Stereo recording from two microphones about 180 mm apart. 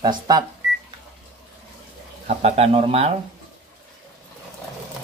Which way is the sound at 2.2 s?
35° right (ahead or behind).